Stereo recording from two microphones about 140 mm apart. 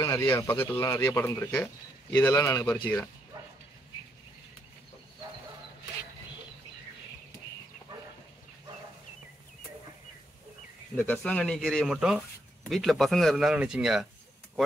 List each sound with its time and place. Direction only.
0.0 s speech: 30° left (ahead or behind)
0.5 s speech: 15° left (ahead or behind)
2.1 s speech: 25° left (ahead or behind)
11.0 s speech: 5° left (ahead or behind)